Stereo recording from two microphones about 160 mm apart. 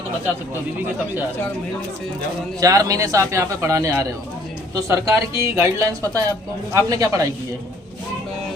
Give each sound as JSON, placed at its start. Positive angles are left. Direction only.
{"t": 2.6, "sound": "a man's voice", "side_deg": -20}